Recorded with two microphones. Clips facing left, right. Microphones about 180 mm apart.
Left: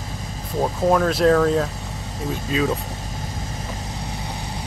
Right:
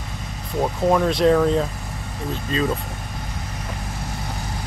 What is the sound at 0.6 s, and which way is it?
Speech, centre (ahead or behind).